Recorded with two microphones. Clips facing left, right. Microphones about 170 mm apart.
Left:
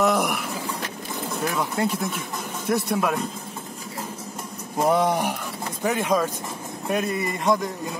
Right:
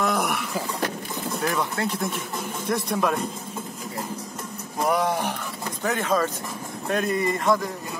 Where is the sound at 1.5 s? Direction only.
10° left (ahead or behind).